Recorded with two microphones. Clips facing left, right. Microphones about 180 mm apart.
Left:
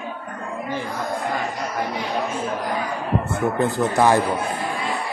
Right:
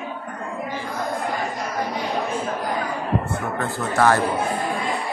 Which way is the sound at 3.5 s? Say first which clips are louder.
Left 2 dB; 20° left (ahead or behind).